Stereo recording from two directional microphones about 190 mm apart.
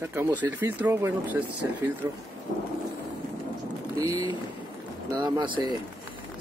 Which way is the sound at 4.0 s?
20° right (ahead or behind).